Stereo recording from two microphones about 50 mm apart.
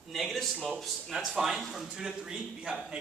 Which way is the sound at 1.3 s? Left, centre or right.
Centre.